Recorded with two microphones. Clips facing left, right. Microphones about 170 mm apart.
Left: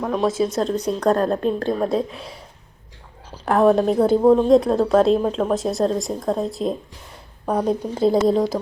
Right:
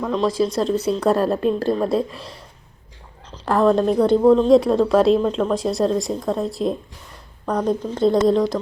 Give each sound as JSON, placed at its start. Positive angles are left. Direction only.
{"t": 0.0, "sound": "a woman's voice", "side_deg": 5}
{"t": 4.2, "sound": "speech", "side_deg": 20}
{"t": 4.4, "sound": "a woman's voice", "side_deg": 0}